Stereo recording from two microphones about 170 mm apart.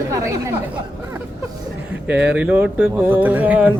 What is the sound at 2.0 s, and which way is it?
Speech, 10° right (ahead or behind).